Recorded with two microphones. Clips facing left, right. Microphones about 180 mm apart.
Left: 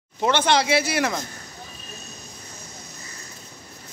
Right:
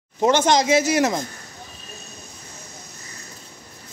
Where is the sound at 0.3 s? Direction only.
40° right (ahead or behind).